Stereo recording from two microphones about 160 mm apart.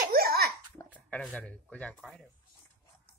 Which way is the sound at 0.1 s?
70° right (ahead or behind).